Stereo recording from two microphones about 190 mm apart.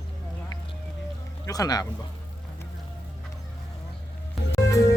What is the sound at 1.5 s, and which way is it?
Speech, 20° left (ahead or behind).